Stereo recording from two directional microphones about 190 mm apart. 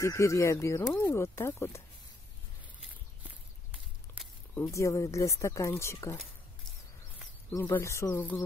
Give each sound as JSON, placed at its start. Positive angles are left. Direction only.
{"t": 0.0, "sound": "speech", "side_deg": 15}
{"t": 4.6, "sound": "speech", "side_deg": 15}
{"t": 7.5, "sound": "speech", "side_deg": 15}